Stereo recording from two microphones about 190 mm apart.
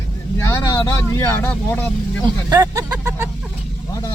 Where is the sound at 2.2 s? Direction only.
20° right (ahead or behind).